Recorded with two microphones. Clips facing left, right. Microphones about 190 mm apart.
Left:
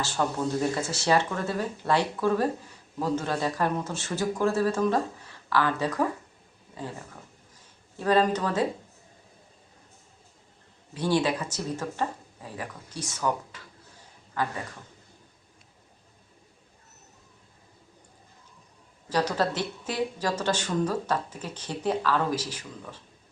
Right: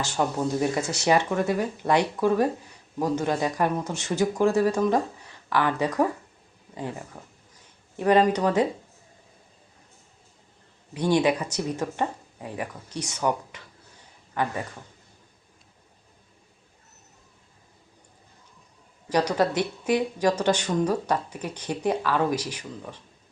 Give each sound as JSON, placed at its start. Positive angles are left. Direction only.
{"t": 0.0, "sound": "speech", "side_deg": -15}
{"t": 7.9, "sound": "speech", "side_deg": -15}
{"t": 10.9, "sound": "speech", "side_deg": -15}
{"t": 19.0, "sound": "speech", "side_deg": -15}